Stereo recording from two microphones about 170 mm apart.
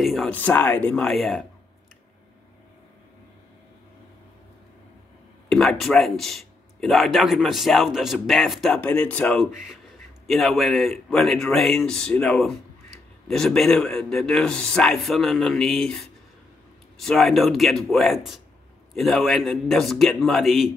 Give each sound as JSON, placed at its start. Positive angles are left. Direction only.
{"t": 0.0, "sound": "speech", "side_deg": 0}
{"t": 5.5, "sound": "speech", "side_deg": 0}